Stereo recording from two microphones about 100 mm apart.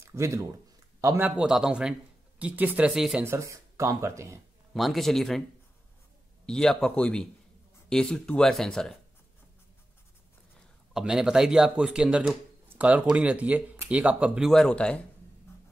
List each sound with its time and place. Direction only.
0.0 s speech: 30° right (ahead or behind)
1.2 s a man's voice: 10° right (ahead or behind)
2.9 s speech: 5° right (ahead or behind)
3.3 s speech: 30° right (ahead or behind)
4.7 s speech: centre (ahead or behind)
6.4 s a man's voice: 5° left (ahead or behind)
10.9 s a man's voice: 5° right (ahead or behind)
12.6 s a sound: 15° right (ahead or behind)
13.1 s a man's voice: 15° right (ahead or behind)
14.5 s a man's voice: 5° left (ahead or behind)